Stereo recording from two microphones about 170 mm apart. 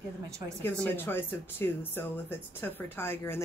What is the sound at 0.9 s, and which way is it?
Speech, 15° left (ahead or behind).